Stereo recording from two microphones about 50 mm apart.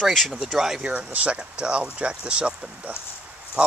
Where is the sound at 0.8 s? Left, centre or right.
Right.